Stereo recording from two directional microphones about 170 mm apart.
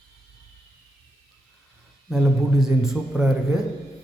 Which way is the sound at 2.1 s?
Centre (ahead or behind).